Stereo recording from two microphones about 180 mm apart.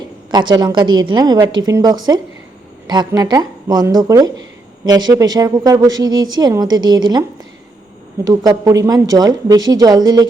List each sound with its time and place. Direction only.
0.3 s a woman's voice: 25° right (ahead or behind)